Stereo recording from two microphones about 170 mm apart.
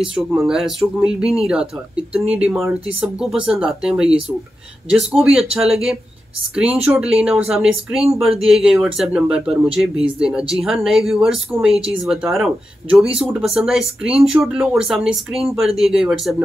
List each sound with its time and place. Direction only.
0.4 s speech: centre (ahead or behind)
11.6 s speech: 35° right (ahead or behind)
12.0 s speech: centre (ahead or behind)